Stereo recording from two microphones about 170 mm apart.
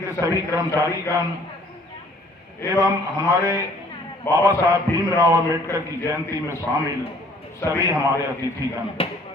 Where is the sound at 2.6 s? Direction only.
20° left (ahead or behind).